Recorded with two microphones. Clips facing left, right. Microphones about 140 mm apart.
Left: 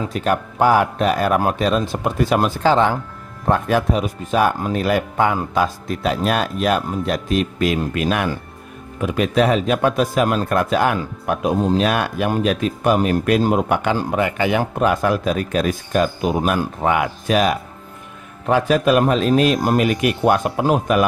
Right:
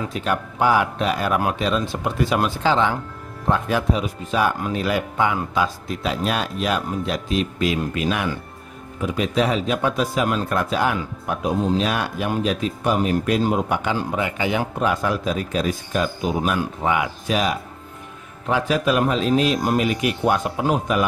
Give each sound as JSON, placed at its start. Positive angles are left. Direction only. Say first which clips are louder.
{"t": 0.1, "sound": "speech", "louder": "left 4 dB", "side_deg": 45}